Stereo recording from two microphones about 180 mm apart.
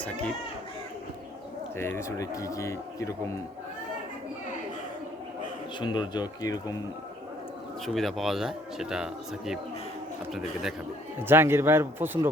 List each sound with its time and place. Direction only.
0.0 s speech: 5° left (ahead or behind)
1.7 s speech: 15° left (ahead or behind)
5.8 s speech: 25° left (ahead or behind)
7.9 s speech: centre (ahead or behind)
10.3 s speech: centre (ahead or behind)
11.2 s speech: 10° right (ahead or behind)